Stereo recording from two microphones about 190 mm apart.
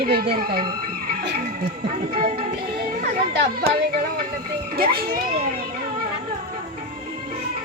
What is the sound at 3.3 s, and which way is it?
Speech, 65° right (ahead or behind).